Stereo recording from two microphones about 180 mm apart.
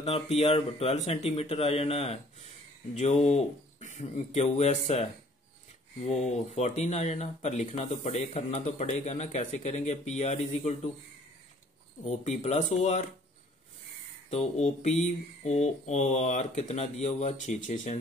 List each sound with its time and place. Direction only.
0.0 s speech: 35° left (ahead or behind)
6.0 s speech: 35° left (ahead or behind)
12.1 s speech: 40° left (ahead or behind)
14.3 s speech: 40° left (ahead or behind)